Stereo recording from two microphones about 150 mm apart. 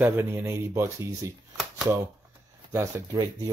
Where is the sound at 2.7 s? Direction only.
20° right (ahead or behind).